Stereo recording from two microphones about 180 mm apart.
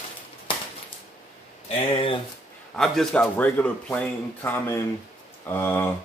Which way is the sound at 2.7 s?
5° left (ahead or behind).